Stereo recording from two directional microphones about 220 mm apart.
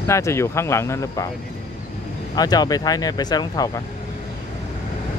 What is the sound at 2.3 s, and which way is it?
Speech, 15° left (ahead or behind).